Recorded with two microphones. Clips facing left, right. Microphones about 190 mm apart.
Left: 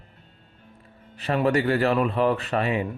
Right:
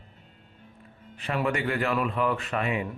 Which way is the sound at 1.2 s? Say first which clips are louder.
Left 6 dB; 35° left (ahead or behind).